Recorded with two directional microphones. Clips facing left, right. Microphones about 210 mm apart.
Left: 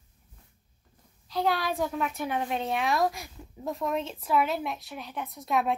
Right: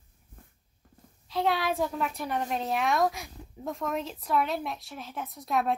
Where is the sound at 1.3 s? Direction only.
Centre (ahead or behind).